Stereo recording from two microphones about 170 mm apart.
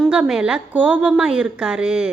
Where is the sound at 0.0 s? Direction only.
5° right (ahead or behind).